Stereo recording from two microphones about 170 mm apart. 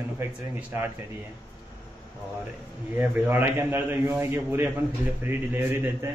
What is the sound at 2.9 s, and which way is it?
A man's voice, 10° right (ahead or behind).